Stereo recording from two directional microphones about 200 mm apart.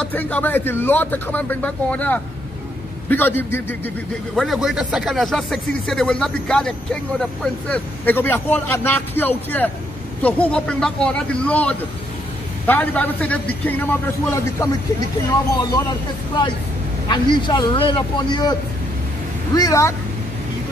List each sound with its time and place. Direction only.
0.0 s speech: 10° left (ahead or behind)
17.1 s speech: 20° left (ahead or behind)